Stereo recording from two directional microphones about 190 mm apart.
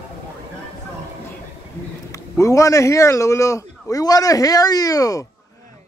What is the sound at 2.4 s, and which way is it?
A man's voice, 15° left (ahead or behind).